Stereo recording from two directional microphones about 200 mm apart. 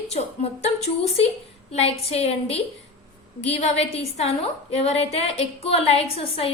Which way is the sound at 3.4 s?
30° left (ahead or behind).